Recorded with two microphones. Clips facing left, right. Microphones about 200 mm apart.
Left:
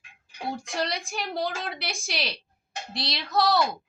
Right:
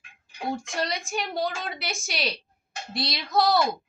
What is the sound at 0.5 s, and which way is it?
A woman's voice, centre (ahead or behind).